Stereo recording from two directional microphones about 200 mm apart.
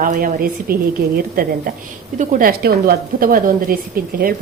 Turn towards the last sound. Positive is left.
turn(degrees=-45)  # may be behind; listen again after turning